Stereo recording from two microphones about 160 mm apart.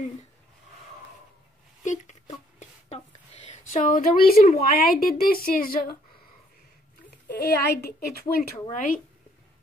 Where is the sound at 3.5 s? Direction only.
50° left (ahead or behind).